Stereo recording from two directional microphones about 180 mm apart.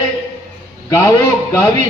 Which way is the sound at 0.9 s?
15° left (ahead or behind).